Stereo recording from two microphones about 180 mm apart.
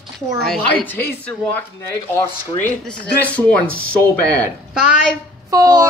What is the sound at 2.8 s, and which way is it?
Speech, 5° left (ahead or behind).